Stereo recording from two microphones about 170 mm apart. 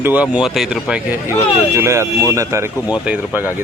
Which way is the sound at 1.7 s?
15° right (ahead or behind).